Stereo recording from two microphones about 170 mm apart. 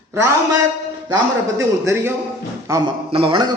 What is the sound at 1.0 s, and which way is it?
A man's voice, 15° right (ahead or behind).